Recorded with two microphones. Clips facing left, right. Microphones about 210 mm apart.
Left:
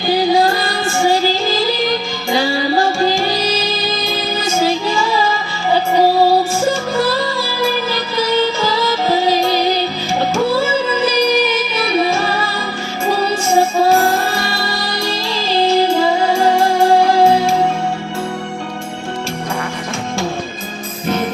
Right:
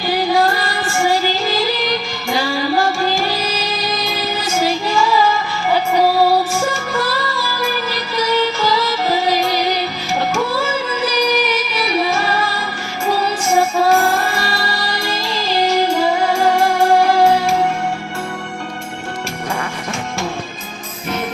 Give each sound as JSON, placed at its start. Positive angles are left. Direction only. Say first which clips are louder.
{"t": 9.0, "sound": "music", "louder": "left 3 dB", "side_deg": 25}
{"t": 11.9, "sound": "music", "louder": "left 3 dB", "side_deg": 25}
{"t": 13.6, "sound": "music", "louder": "left 2 dB", "side_deg": 25}
{"t": 15.1, "sound": "music", "louder": "left 1 dB", "side_deg": 25}